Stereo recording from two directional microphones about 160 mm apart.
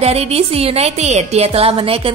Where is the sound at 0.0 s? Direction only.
40° right (ahead or behind).